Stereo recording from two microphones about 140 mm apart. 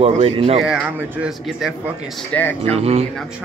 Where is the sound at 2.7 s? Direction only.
45° right (ahead or behind).